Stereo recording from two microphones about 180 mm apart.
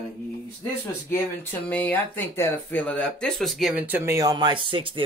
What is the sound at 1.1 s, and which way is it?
Speech, 10° left (ahead or behind).